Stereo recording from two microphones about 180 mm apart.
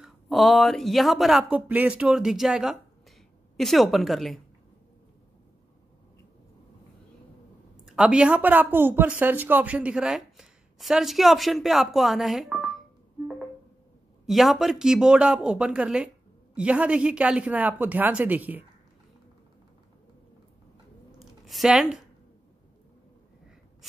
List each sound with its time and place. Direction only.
0.0 s speech: centre (ahead or behind)
7.8 s speech: 5° right (ahead or behind)
14.2 s speech: centre (ahead or behind)
21.5 s speech: centre (ahead or behind)